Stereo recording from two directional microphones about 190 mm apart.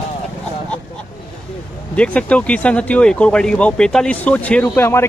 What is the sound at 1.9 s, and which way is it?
Speech, 5° left (ahead or behind).